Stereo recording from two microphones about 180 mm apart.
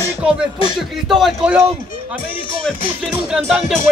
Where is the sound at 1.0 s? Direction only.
Centre (ahead or behind).